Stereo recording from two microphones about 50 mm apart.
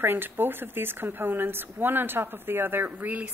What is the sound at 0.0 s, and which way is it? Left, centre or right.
Speech, right.